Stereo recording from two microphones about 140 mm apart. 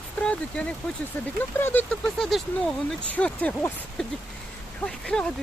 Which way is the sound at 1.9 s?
5° left (ahead or behind).